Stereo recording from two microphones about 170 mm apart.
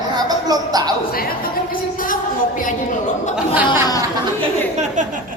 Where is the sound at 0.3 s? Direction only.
20° right (ahead or behind).